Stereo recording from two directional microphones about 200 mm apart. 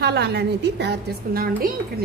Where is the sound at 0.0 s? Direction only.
55° right (ahead or behind).